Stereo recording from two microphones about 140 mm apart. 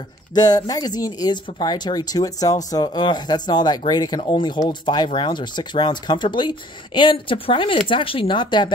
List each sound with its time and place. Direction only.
0.3 s speech: 30° left (ahead or behind)